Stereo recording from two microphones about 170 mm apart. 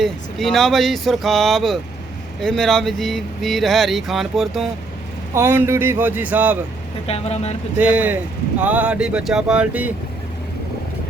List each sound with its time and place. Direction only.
0.0 s speech: centre (ahead or behind)
5.3 s speech: 15° right (ahead or behind)
7.1 s speech: 40° left (ahead or behind)
7.8 s speech: 10° right (ahead or behind)